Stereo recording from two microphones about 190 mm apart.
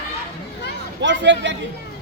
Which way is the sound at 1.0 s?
70° right (ahead or behind).